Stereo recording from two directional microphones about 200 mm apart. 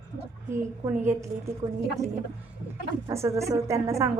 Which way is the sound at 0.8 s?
20° right (ahead or behind).